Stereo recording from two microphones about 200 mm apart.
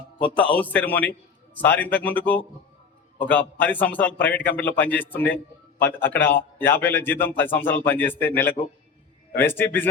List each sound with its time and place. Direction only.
0.3 s a man's voice: 5° left (ahead or behind)